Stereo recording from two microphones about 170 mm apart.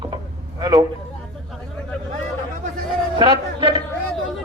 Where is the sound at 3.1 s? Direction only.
30° right (ahead or behind).